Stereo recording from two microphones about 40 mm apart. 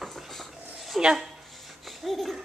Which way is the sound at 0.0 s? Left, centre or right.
Centre.